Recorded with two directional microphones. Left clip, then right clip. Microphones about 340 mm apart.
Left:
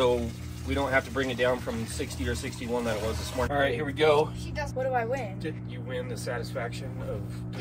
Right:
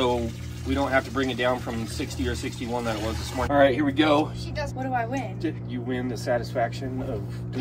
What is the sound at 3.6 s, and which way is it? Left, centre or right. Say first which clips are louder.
Speech: right 7 dB; centre.